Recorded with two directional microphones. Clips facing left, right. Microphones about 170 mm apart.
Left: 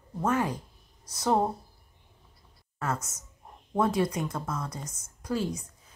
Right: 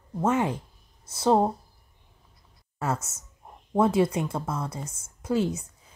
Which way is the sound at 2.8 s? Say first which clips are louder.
Right 3 dB; 25° right (ahead or behind).